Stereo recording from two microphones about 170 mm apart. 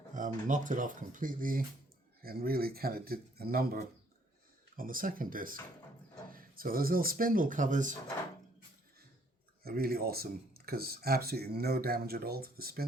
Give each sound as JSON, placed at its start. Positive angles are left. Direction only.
{"t": 0.1, "sound": "speech", "side_deg": -50}
{"t": 4.8, "sound": "speech", "side_deg": -55}
{"t": 9.6, "sound": "speech", "side_deg": -65}